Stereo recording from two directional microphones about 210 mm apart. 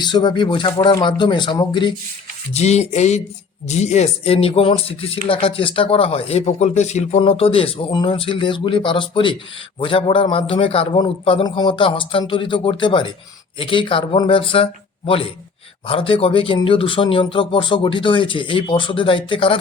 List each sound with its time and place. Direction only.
0.0 s speech: 20° left (ahead or behind)
2.5 s music: 30° left (ahead or behind)
3.7 s speech: 35° left (ahead or behind)